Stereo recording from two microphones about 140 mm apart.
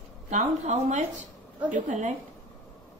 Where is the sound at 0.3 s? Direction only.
60° right (ahead or behind).